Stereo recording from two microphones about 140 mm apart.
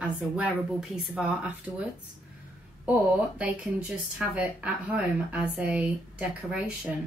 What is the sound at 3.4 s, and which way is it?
A woman's voice, 10° right (ahead or behind).